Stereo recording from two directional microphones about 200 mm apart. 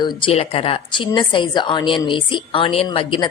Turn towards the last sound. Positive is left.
turn(degrees=25)  # may be behind; listen again after turning